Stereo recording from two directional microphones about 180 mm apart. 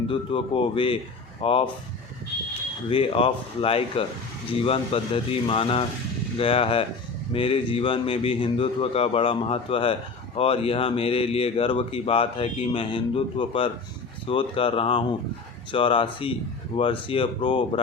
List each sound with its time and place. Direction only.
0.1 s speech: 30° left (ahead or behind)
2.9 s speech: 30° left (ahead or behind)